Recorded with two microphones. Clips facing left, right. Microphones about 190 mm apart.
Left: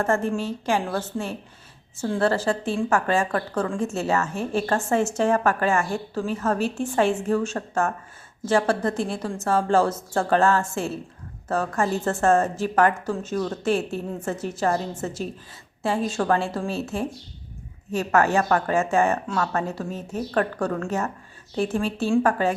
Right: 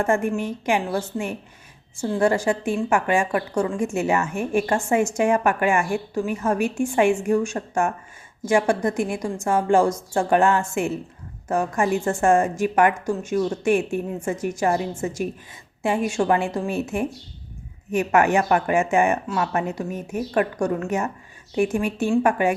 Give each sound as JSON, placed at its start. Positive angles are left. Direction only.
{"t": 0.0, "sound": "a woman's voice", "side_deg": -15}